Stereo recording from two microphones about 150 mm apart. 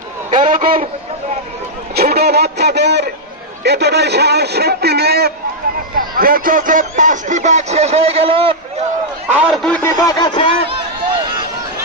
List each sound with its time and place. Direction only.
0.3 s a man's voice: 60° right (ahead or behind)
2.0 s a sound: 90° right
3.6 s a man's voice: 90° right
5.9 s speech: 75° right (ahead or behind); by 8.5 s 35° right (ahead or behind)
9.3 s a man's voice: 5° right (ahead or behind)
9.6 s speech: 10° left (ahead or behind)
10.0 s a sound: 30° left (ahead or behind)